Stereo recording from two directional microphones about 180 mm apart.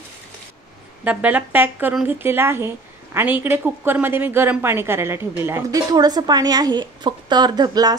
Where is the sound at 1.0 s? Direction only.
10° right (ahead or behind).